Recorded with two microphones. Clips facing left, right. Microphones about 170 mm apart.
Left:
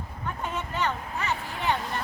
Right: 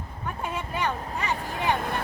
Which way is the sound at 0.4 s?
10° right (ahead or behind).